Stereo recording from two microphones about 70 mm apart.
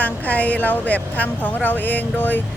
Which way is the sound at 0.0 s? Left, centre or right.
Left.